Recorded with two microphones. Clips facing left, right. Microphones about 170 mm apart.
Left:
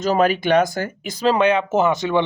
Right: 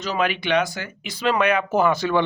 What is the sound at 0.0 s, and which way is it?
Speech, 45° left (ahead or behind).